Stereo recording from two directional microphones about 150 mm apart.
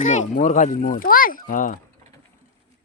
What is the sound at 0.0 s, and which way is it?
A child's voice, 55° left (ahead or behind).